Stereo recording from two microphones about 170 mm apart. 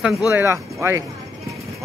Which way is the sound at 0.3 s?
15° right (ahead or behind).